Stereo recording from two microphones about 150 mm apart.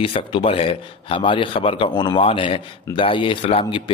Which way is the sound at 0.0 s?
35° left (ahead or behind).